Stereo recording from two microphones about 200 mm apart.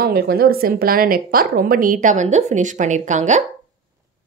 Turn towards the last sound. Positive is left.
turn(degrees=-35)  # may be behind; listen again after turning